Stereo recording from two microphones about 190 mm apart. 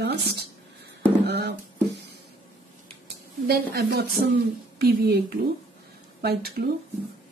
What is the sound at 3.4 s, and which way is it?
Speech, 55° right (ahead or behind).